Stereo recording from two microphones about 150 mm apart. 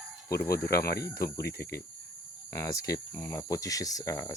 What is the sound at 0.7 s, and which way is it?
Speech, 90° left.